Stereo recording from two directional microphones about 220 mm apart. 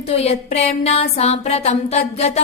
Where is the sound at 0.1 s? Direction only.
30° left (ahead or behind).